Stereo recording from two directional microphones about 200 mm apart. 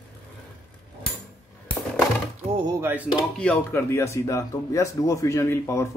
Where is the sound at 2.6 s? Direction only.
10° right (ahead or behind).